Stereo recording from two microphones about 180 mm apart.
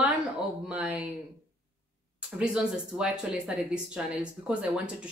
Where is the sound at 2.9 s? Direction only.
5° right (ahead or behind).